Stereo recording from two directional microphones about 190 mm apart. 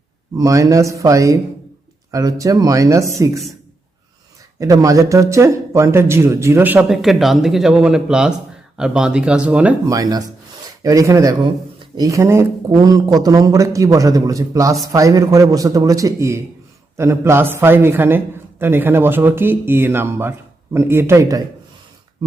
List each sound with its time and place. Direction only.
0.3 s speech: 15° right (ahead or behind)
4.6 s speech: 15° right (ahead or behind)
9.8 s speech: 20° right (ahead or behind)